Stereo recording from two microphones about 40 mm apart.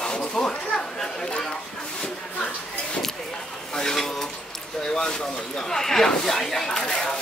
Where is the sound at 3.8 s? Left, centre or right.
Centre.